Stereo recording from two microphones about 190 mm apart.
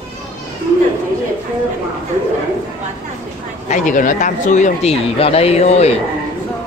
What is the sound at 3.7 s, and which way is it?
Speech, 45° left (ahead or behind).